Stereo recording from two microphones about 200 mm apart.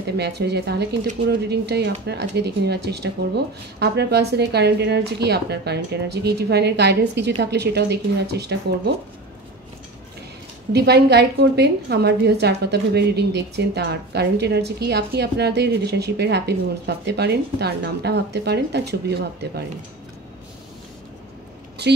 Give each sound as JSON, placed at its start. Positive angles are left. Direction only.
{"t": 0.2, "sound": "a woman's voice", "side_deg": -55}
{"t": 10.7, "sound": "a woman's voice", "side_deg": -55}